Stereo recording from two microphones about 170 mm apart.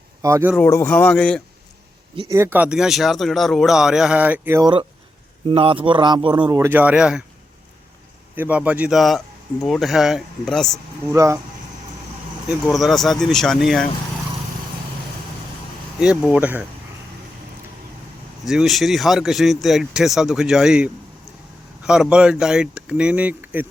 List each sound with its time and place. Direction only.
0.2 s speech: 15° right (ahead or behind)
0.5 s music: 15° left (ahead or behind)
2.3 s speech: 15° right (ahead or behind)
4.6 s speech: 30° right (ahead or behind)
6.7 s speech: 10° right (ahead or behind)
8.4 s speech: 10° right (ahead or behind)
11.1 s speech: 20° right (ahead or behind)
12.6 s speech: centre (ahead or behind)
16.0 s speech: 5° right (ahead or behind)
18.4 s speech: centre (ahead or behind)